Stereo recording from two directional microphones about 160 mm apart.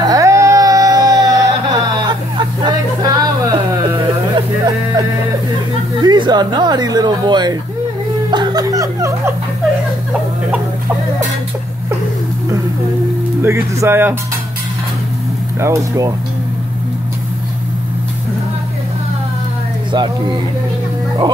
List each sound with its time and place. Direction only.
0.0 s a sound: 20° right (ahead or behind)
5.9 s speech: 30° right (ahead or behind)
13.4 s speech: 15° right (ahead or behind)
15.6 s speech: 20° right (ahead or behind)
19.9 s speech: 30° right (ahead or behind)